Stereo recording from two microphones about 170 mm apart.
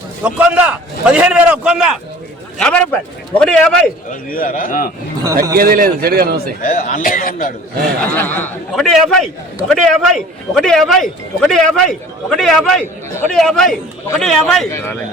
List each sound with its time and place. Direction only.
0.2 s a man's voice: 5° right (ahead or behind)
2.6 s speech: 5° left (ahead or behind)
4.1 s a man's voice: 55° left (ahead or behind)
5.5 s speech: 60° right (ahead or behind)
6.6 s a man's voice: 50° left (ahead or behind)
8.1 s speech: 10° left (ahead or behind)